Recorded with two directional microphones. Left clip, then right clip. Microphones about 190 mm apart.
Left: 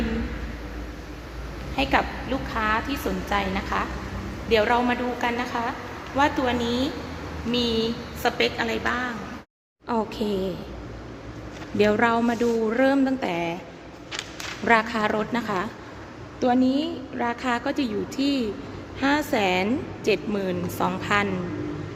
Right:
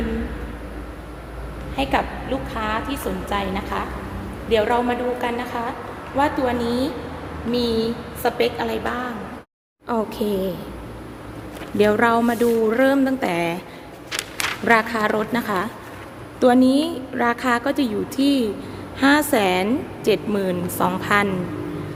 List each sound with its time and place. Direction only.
1.7 s a woman's voice: 20° left (ahead or behind)
6.1 s speech: 5° left (ahead or behind)
11.8 s speech: centre (ahead or behind)
14.6 s a woman's voice: centre (ahead or behind)